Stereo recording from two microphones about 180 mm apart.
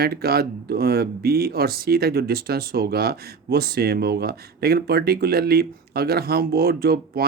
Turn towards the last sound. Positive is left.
turn(degrees=-60)  # may be behind; listen again after turning